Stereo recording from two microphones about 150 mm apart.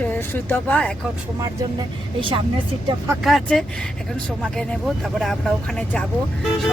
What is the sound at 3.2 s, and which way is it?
Speech, centre (ahead or behind).